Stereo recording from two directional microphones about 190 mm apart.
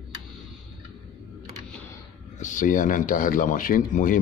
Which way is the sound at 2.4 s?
40° left (ahead or behind).